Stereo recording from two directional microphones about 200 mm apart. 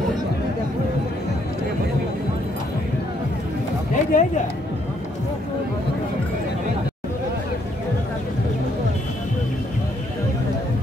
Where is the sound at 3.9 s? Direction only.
40° left (ahead or behind).